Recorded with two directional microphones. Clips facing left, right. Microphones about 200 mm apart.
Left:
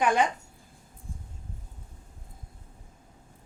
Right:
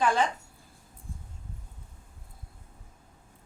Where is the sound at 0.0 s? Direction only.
15° left (ahead or behind).